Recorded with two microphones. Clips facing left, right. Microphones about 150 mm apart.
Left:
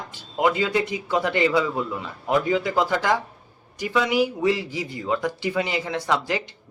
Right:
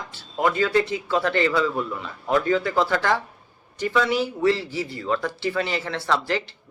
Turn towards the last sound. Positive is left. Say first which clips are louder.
# even
turn(degrees=15)  # may be behind; listen again after turning